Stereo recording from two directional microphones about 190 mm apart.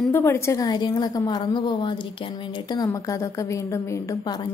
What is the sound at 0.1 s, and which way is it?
A woman's voice, 15° left (ahead or behind).